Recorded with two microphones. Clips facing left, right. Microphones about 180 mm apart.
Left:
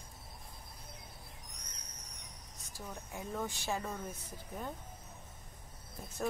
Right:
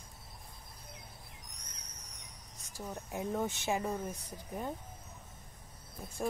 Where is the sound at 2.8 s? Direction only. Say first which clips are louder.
Right 5 dB; 20° right (ahead or behind).